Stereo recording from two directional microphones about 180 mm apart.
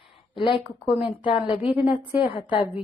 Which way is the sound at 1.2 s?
25° left (ahead or behind).